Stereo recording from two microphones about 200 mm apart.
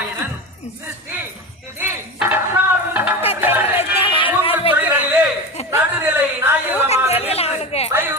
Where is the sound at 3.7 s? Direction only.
25° left (ahead or behind).